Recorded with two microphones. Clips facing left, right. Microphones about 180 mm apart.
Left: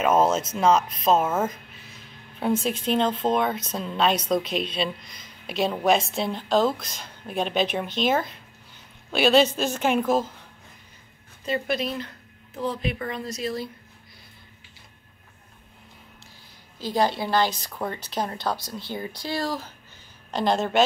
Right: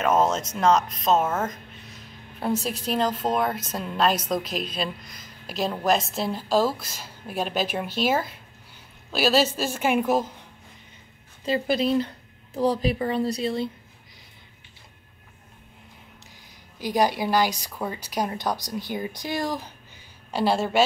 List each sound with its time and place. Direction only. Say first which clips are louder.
0.0 s a woman's voice: left 1 dB; 5° left (ahead or behind); by 10.3 s 15° right (ahead or behind)
11.4 s a woman's voice: right 3 dB; 30° right (ahead or behind)
16.7 s a woman's voice: right 1 dB; 15° right (ahead or behind)